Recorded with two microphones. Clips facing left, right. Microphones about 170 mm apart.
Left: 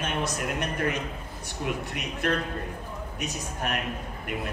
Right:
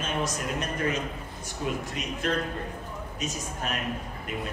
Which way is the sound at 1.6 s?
60° left (ahead or behind).